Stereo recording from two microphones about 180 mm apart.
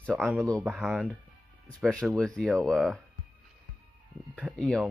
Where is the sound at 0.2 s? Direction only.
Centre (ahead or behind).